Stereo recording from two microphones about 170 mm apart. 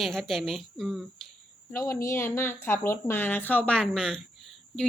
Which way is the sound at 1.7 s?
15° left (ahead or behind).